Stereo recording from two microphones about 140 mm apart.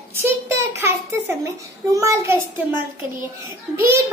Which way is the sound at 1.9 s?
20° right (ahead or behind).